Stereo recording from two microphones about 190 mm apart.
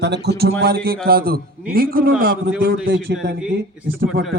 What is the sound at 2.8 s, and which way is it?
Speech, 65° right (ahead or behind).